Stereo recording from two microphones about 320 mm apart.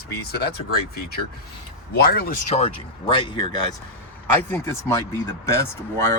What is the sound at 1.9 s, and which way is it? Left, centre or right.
Speech, left.